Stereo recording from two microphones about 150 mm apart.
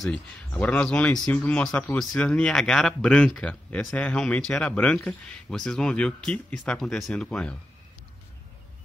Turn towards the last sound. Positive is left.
turn(degrees=5)  # may be behind; listen again after turning